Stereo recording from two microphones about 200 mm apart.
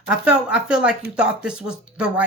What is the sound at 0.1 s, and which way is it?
Speech, 5° right (ahead or behind).